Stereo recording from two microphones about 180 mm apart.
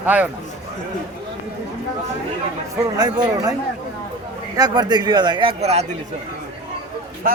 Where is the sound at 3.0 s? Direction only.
20° right (ahead or behind).